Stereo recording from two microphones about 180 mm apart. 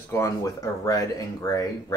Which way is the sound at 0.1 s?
20° left (ahead or behind).